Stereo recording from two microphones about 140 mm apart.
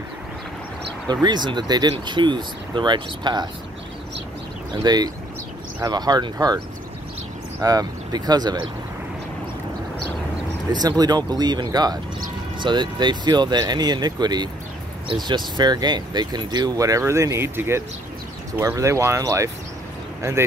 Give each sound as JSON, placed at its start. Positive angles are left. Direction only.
{"t": 1.2, "sound": "speech", "side_deg": -30}
{"t": 4.8, "sound": "speech", "side_deg": -30}
{"t": 7.6, "sound": "speech", "side_deg": -25}
{"t": 10.7, "sound": "speech", "side_deg": -30}